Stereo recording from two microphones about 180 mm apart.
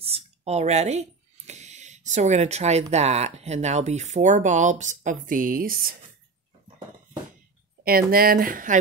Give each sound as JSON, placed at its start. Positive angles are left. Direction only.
{"t": 0.0, "sound": "a sound", "side_deg": -35}
{"t": 2.9, "sound": "speech", "side_deg": -35}
{"t": 7.8, "sound": "speech", "side_deg": -55}